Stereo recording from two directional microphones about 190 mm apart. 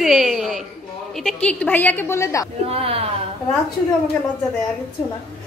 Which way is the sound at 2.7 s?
30° right (ahead or behind).